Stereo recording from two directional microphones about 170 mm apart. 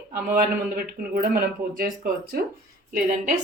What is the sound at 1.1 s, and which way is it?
Speech, 60° right (ahead or behind).